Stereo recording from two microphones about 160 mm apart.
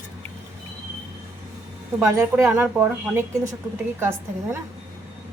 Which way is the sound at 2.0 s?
15° right (ahead or behind).